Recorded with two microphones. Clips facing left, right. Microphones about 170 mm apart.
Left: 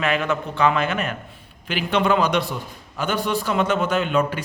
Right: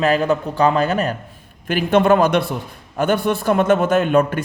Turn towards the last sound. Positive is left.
turn(degrees=-50)  # may be behind; listen again after turning